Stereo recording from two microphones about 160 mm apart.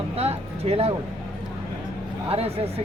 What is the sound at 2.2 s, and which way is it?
Speech, 40° right (ahead or behind).